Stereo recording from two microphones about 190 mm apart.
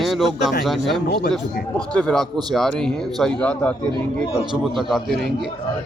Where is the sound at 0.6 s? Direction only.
Centre (ahead or behind).